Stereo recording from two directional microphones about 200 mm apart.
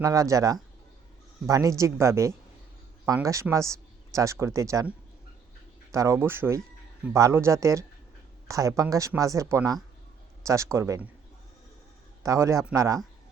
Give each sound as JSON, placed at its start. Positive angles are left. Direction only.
{"t": 0.0, "sound": "speech", "side_deg": -15}
{"t": 12.2, "sound": "speech", "side_deg": -15}